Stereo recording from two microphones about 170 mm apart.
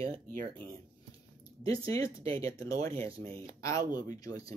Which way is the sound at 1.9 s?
15° left (ahead or behind).